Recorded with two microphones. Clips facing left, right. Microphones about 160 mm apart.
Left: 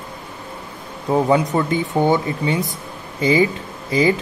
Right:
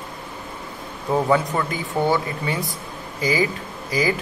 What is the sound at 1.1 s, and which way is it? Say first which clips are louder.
Speech: left 3 dB; 20° left (ahead or behind).